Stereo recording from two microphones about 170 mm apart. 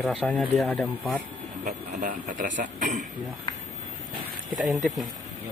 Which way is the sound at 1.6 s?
50° right (ahead or behind).